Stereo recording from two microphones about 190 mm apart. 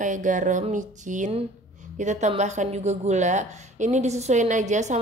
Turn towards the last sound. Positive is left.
turn(degrees=-40)  # may be behind; listen again after turning